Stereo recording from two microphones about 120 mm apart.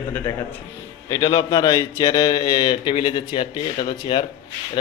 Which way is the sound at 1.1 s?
30° left (ahead or behind).